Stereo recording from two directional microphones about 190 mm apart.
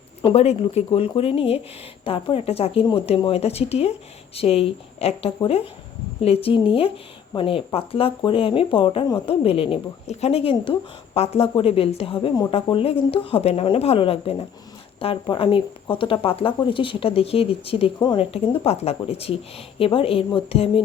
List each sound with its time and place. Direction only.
0.3 s speech: 35° left (ahead or behind)